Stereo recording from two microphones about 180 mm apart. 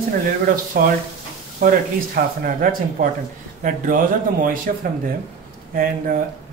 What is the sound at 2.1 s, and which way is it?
Speech, 50° right (ahead or behind).